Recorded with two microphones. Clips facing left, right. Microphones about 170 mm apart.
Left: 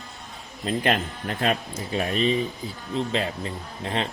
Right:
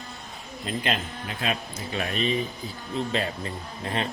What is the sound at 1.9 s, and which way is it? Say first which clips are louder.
Speech: left 4 dB; 30° left (ahead or behind).